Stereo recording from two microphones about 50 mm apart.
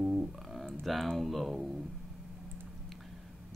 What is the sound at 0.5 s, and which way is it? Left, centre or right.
Speech, centre.